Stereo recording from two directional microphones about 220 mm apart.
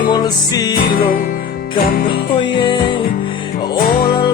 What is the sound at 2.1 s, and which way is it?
Music, 20° left (ahead or behind).